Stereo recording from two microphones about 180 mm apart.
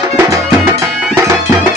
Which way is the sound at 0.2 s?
20° right (ahead or behind).